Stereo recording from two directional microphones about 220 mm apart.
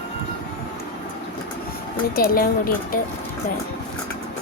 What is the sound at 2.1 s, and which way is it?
Speech, 40° left (ahead or behind).